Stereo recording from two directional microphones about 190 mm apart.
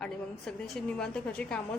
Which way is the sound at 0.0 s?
5° left (ahead or behind).